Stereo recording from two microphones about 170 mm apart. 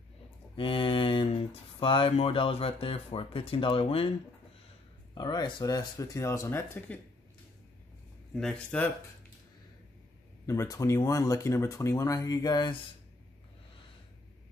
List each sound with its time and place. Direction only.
0.6 s speech: 30° left (ahead or behind)
5.1 s speech: 25° left (ahead or behind)
8.4 s speech: 5° left (ahead or behind)
10.4 s speech: 15° left (ahead or behind)